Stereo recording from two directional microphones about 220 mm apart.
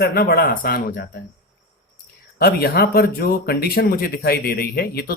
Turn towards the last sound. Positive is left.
turn(degrees=45)  # may be behind; listen again after turning